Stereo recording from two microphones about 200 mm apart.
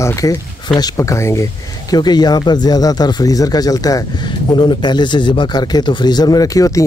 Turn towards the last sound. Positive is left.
turn(degrees=15)  # may be behind; listen again after turning